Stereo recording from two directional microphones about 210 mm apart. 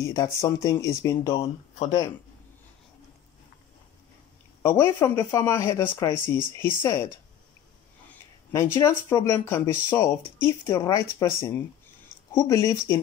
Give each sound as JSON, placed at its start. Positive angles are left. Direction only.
{"t": 0.0, "sound": "speech", "side_deg": 15}
{"t": 4.6, "sound": "speech", "side_deg": 10}
{"t": 8.1, "sound": "speech", "side_deg": 10}